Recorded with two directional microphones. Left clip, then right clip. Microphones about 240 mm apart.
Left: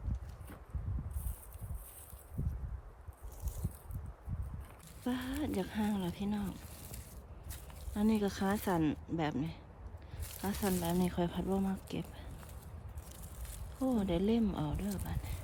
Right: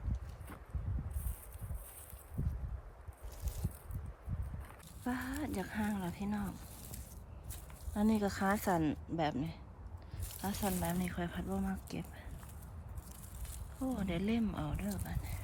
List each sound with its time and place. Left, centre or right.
2.4 s a sound: left
5.0 s speech: centre
14.0 s speech: centre